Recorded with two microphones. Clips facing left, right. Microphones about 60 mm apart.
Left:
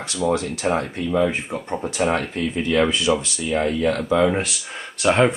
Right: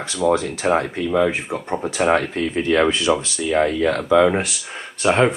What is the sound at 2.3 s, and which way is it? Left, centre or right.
Speech, right.